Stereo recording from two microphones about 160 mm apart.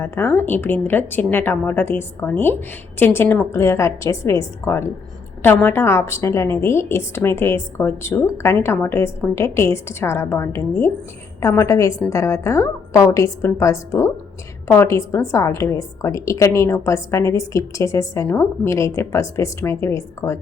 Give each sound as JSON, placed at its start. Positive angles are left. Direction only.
{"t": 0.0, "sound": "a woman's voice", "side_deg": 15}